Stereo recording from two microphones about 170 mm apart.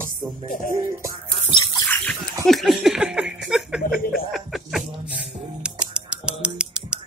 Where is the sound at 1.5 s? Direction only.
20° left (ahead or behind).